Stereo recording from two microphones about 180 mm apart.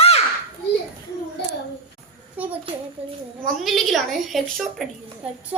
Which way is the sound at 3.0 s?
35° right (ahead or behind).